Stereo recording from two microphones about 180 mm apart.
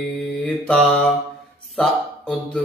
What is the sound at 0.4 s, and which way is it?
Mantra, 5° left (ahead or behind).